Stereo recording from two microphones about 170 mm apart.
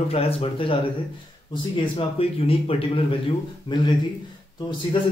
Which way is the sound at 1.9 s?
35° left (ahead or behind).